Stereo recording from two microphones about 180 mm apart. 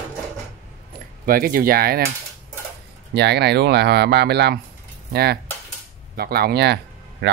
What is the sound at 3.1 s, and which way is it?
Speech, 65° right (ahead or behind).